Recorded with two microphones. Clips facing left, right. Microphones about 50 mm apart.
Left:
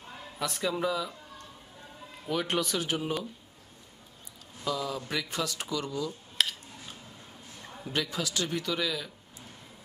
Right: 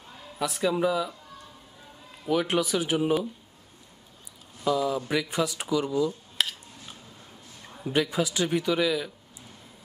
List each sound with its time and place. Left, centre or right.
0.4 s speech: centre
2.2 s speech: centre
4.6 s speech: centre
6.3 s dishes: centre
7.8 s speech: centre